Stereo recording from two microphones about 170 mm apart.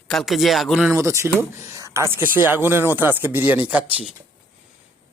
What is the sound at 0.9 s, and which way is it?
Speech, 15° right (ahead or behind).